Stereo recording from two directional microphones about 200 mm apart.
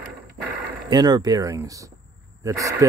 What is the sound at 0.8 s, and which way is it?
Speech, 20° right (ahead or behind).